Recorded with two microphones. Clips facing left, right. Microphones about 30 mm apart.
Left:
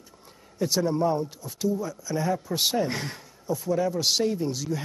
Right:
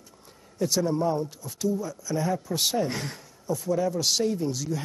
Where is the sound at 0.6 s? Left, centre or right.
Centre.